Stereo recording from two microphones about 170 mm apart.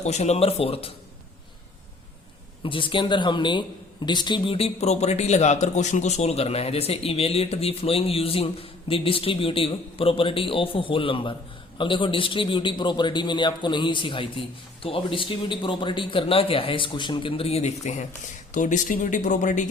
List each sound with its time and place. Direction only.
0.0 s a man's voice: 40° left (ahead or behind)
2.6 s a man's voice: 30° left (ahead or behind); by 19.7 s 45° left (ahead or behind)